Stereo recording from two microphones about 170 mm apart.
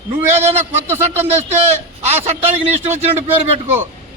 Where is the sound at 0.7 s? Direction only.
15° right (ahead or behind).